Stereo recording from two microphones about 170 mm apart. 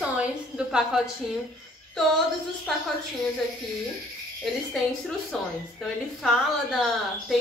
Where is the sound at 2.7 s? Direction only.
Centre (ahead or behind).